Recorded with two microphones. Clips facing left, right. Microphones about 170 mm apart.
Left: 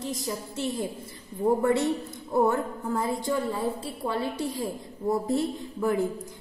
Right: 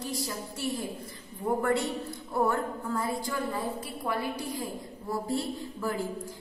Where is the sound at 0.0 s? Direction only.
20° left (ahead or behind).